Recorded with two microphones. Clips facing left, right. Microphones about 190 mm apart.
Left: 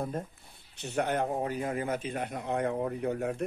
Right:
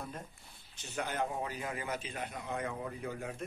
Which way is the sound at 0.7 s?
65° left (ahead or behind).